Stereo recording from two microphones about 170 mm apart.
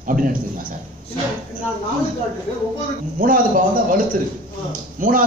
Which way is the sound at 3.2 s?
55° right (ahead or behind).